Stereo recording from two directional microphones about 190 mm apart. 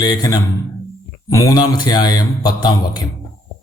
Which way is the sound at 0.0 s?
20° left (ahead or behind).